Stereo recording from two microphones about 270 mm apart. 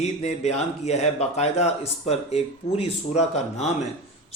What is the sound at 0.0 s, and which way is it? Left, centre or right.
Speech, left.